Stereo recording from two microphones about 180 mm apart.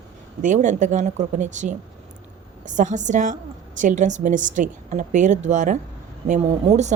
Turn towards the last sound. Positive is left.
turn(degrees=-40)  # may be behind; listen again after turning